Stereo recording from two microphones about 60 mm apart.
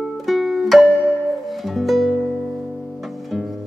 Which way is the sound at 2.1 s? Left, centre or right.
Right.